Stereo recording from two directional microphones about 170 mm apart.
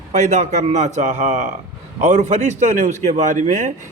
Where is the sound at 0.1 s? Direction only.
45° right (ahead or behind).